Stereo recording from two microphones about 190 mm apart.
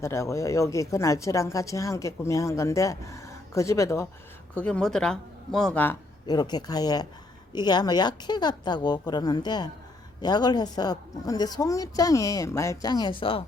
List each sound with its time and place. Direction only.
0.0 s speech: 15° left (ahead or behind)
6.2 s a woman's voice: 20° left (ahead or behind)